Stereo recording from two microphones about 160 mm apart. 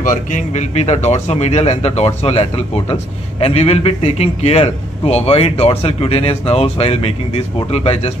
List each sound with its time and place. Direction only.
0.0 s speech: 55° left (ahead or behind)